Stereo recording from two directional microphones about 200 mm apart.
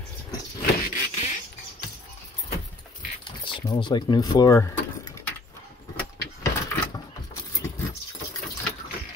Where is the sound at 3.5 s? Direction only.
25° left (ahead or behind).